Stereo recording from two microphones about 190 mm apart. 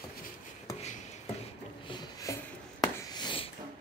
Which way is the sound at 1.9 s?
20° left (ahead or behind).